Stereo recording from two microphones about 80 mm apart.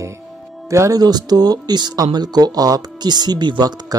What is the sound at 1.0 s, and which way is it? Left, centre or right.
Speech, right.